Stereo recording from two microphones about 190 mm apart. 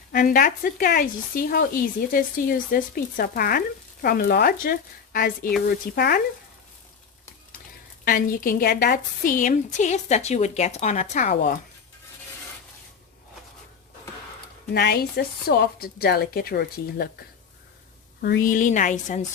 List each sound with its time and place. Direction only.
0.1 s speech: 45° left (ahead or behind)
8.0 s a woman's voice: 50° left (ahead or behind)
14.7 s a woman's voice: 60° left (ahead or behind)
18.2 s speech: 50° left (ahead or behind)